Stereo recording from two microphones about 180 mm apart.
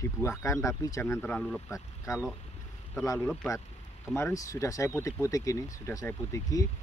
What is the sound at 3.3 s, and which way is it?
Speech, centre (ahead or behind).